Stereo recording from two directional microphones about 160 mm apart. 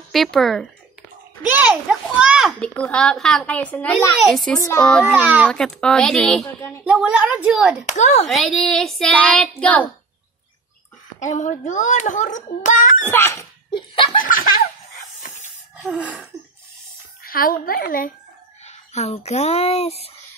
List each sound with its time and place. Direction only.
0.1 s a woman's voice: centre (ahead or behind)
4.6 s a child's voice: 20° left (ahead or behind)
4.8 s a woman's voice: 5° left (ahead or behind)
5.1 s a child's voice: 10° right (ahead or behind)
5.5 s a woman's voice: 5° left (ahead or behind)
7.8 s a child's voice: 50° left (ahead or behind)
8.3 s a woman's voice: centre (ahead or behind)
11.1 s a child's voice: 50° left (ahead or behind)
13.1 s a sound: 15° left (ahead or behind)
13.7 s laughter: 30° left (ahead or behind)
14.1 s speech: 60° left (ahead or behind)
15.8 s a child's voice: 10° right (ahead or behind)
17.2 s a woman's voice: 65° left (ahead or behind)
18.7 s speech: 40° left (ahead or behind)